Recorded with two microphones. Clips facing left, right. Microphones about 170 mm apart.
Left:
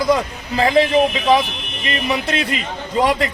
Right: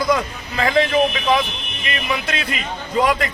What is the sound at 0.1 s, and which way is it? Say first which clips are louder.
A man's voice: left 3 dB; 30° left (ahead or behind).